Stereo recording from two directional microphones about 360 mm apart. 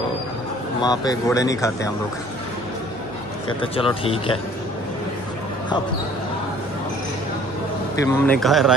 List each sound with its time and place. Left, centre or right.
0.8 s speech: centre
3.7 s speech: centre
8.0 s a man's voice: centre